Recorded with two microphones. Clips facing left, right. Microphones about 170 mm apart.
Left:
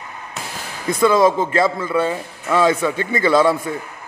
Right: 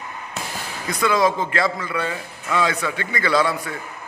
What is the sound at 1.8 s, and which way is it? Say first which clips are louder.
A man's voice: left 6 dB; 25° left (ahead or behind).